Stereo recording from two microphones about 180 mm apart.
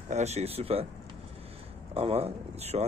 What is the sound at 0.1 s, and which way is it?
Speech, 35° right (ahead or behind).